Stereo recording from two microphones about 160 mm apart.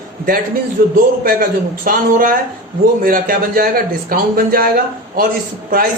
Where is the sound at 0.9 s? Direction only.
60° right (ahead or behind).